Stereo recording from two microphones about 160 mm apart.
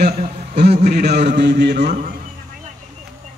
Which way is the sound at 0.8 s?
90° right.